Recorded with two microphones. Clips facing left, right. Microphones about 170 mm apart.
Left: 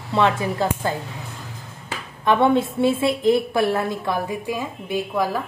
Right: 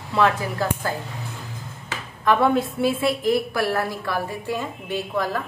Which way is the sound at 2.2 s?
25° left (ahead or behind).